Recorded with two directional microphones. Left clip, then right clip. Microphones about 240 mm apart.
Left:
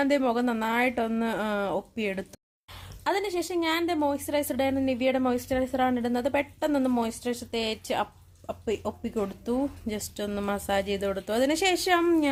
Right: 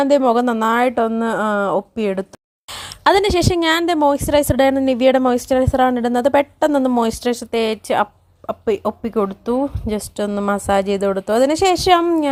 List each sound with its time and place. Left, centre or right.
0.0 s speech: right
2.6 s a woman's voice: right